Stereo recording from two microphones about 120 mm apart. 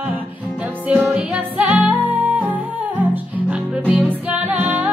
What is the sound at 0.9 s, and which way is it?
Music, 15° right (ahead or behind).